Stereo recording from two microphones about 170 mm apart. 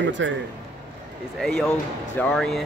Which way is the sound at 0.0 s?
90° right.